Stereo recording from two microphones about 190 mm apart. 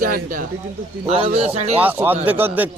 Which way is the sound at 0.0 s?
45° right (ahead or behind).